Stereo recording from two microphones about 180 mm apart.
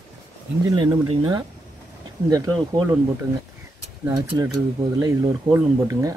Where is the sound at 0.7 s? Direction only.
25° right (ahead or behind).